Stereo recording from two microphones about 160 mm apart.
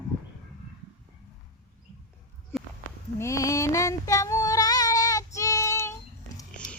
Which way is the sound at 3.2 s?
20° left (ahead or behind).